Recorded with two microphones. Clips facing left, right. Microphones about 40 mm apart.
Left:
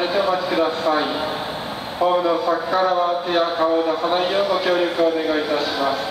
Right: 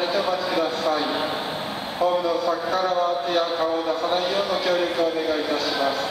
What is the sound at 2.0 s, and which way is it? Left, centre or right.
Speech, left.